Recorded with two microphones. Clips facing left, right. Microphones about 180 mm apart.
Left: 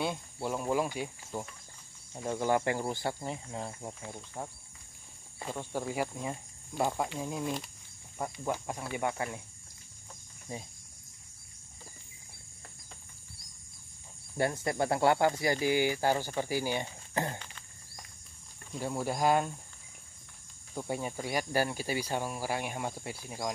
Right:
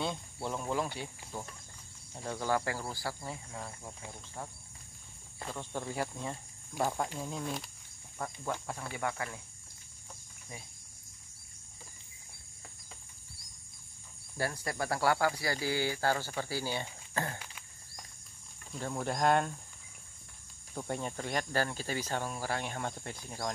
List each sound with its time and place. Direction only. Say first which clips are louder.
0.0 s speech: left 2 dB; 5° left (ahead or behind); by 4.5 s 20° left (ahead or behind)
5.4 s speech: left 3 dB; 10° left (ahead or behind)
10.5 s speech: left 7 dB; 30° left (ahead or behind)
14.3 s speech: left 5 dB; 20° left (ahead or behind)
18.7 s speech: left 2 dB; 10° left (ahead or behind)
20.7 s speech: left 2 dB; 10° left (ahead or behind)